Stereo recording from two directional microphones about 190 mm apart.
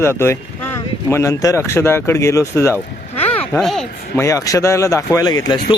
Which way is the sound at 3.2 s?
10° left (ahead or behind).